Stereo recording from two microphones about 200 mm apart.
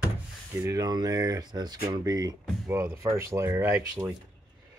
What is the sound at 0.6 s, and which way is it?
Speech, 15° right (ahead or behind).